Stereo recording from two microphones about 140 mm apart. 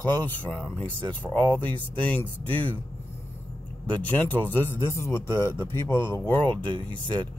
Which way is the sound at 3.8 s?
10° left (ahead or behind).